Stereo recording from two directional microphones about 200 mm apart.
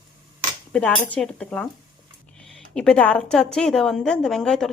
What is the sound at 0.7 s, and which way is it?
A woman's voice, 5° left (ahead or behind).